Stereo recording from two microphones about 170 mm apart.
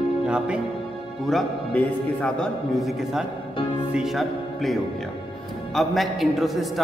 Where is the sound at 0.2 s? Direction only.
5° right (ahead or behind).